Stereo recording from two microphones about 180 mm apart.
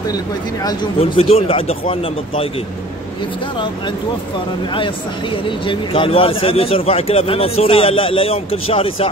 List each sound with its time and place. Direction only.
0.9 s a man's voice: 35° left (ahead or behind)
5.7 s a man's voice: 30° left (ahead or behind)